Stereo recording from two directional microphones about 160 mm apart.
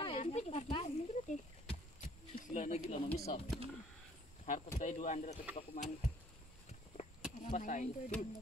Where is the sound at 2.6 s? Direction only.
45° left (ahead or behind).